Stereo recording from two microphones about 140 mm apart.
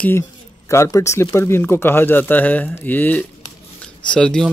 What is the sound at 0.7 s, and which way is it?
Speech, 20° left (ahead or behind).